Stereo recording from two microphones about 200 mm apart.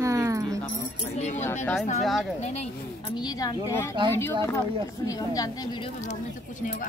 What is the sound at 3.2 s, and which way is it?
Speech, 20° left (ahead or behind).